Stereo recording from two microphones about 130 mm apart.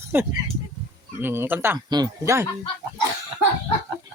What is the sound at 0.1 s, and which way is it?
Speech, 15° right (ahead or behind).